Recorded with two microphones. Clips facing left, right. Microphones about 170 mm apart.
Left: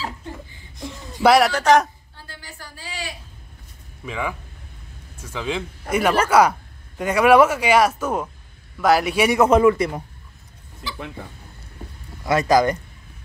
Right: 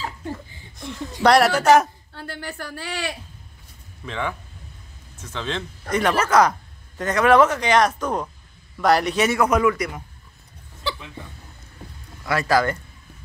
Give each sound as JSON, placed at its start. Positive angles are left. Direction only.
{"t": 1.2, "sound": "speech", "side_deg": 0}
{"t": 2.1, "sound": "a sound", "side_deg": -65}
{"t": 4.0, "sound": "speech", "side_deg": 5}
{"t": 9.4, "sound": "a man's voice", "side_deg": 30}
{"t": 12.3, "sound": "speech", "side_deg": 20}